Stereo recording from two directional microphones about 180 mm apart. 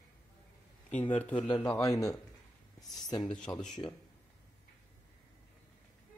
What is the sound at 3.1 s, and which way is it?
Speech, 20° left (ahead or behind).